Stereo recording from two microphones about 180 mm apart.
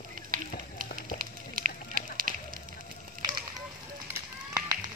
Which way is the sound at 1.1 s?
50° right (ahead or behind).